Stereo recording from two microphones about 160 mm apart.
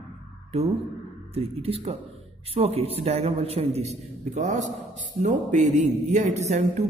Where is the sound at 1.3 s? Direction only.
40° right (ahead or behind).